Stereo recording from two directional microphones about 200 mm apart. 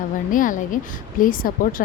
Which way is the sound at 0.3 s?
40° left (ahead or behind).